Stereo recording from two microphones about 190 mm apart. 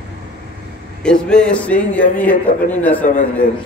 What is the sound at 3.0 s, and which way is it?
Speech, 45° left (ahead or behind).